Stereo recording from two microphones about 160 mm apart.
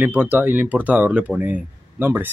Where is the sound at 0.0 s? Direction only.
10° right (ahead or behind).